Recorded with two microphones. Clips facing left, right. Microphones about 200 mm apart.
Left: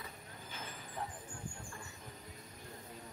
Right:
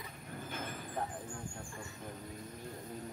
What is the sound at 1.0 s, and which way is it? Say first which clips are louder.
Vehicle: right 4 dB; 45° right (ahead or behind).